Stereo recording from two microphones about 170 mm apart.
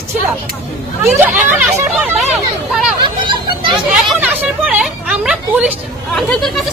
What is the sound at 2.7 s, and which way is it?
Speech, centre (ahead or behind).